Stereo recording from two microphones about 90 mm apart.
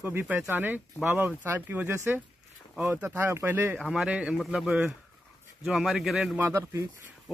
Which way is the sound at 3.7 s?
5° right (ahead or behind).